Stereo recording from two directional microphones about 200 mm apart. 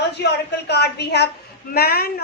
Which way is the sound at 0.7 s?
55° left (ahead or behind).